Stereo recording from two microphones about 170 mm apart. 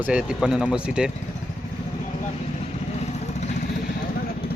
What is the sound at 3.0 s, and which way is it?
Vehicle, 40° left (ahead or behind).